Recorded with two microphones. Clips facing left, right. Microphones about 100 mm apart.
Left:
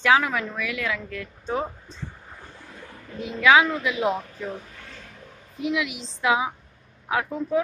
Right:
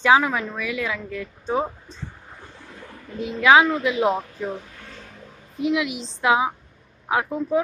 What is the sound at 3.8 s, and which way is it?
Speech, 25° right (ahead or behind).